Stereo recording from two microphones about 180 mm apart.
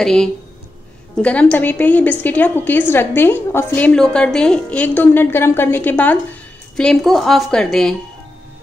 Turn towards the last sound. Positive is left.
turn(degrees=5)  # may be behind; listen again after turning